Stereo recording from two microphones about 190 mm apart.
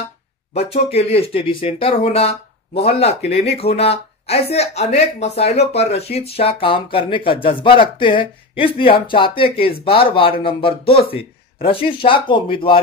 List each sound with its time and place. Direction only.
0.6 s speech: 30° left (ahead or behind)